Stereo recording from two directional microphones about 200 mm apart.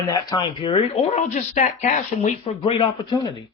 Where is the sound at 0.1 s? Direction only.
20° left (ahead or behind); by 2.3 s 35° left (ahead or behind).